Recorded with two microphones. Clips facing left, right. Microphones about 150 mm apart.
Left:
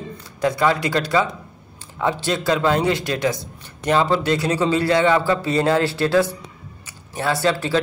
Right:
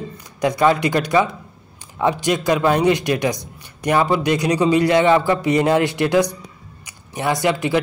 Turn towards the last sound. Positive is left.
turn(degrees=-15)  # may be behind; listen again after turning